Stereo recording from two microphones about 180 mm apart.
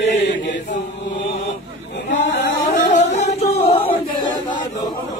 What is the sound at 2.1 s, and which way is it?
Singing, 45° left (ahead or behind).